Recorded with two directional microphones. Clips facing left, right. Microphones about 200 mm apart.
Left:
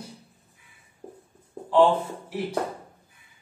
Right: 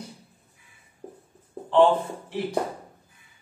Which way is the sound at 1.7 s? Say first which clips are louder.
Right 1 dB; 5° left (ahead or behind).